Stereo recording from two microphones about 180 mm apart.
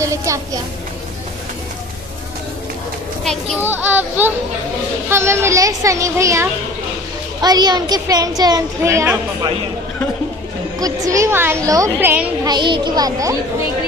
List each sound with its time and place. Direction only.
0.0 s a woman's voice: 15° right (ahead or behind)
3.6 s a woman's voice: 10° right (ahead or behind)
10.8 s a woman's voice: 20° right (ahead or behind)
12.4 s a child's voice: 25° right (ahead or behind)